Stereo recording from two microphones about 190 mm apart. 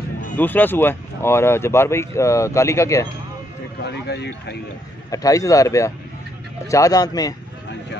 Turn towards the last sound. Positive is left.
turn(degrees=20)  # may be behind; listen again after turning